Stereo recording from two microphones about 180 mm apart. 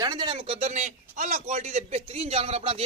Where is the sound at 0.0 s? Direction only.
25° right (ahead or behind).